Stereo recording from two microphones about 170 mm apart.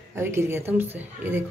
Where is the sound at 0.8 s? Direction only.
15° right (ahead or behind).